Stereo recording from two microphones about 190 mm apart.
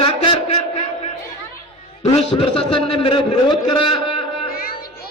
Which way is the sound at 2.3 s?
25° left (ahead or behind).